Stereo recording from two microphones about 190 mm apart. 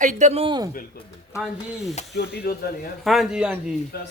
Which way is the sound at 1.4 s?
Centre (ahead or behind).